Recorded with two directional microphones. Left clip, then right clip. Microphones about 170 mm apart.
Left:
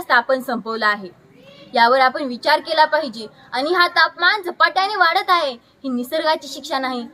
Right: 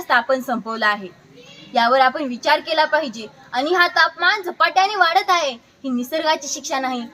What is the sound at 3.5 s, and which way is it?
A woman's voice, 20° left (ahead or behind).